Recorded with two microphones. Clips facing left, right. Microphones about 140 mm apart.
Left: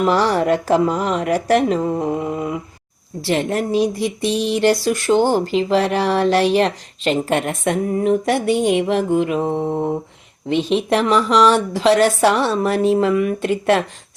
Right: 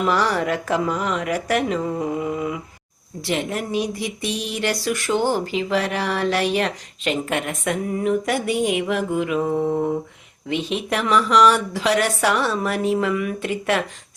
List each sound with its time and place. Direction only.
0.0 s a woman's voice: 30° left (ahead or behind)